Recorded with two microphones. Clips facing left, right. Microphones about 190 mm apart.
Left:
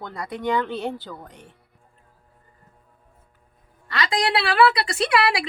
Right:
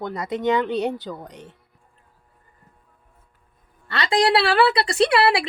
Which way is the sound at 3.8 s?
30° right (ahead or behind).